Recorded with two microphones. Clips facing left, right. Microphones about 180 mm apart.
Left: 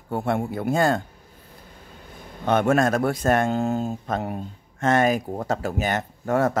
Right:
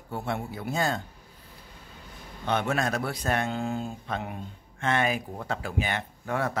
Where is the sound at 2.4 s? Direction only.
50° left (ahead or behind).